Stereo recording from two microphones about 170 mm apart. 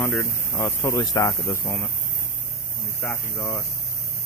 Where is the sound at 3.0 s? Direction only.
15° left (ahead or behind).